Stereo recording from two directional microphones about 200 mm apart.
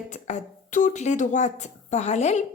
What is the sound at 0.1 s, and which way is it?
A woman's voice, 35° left (ahead or behind).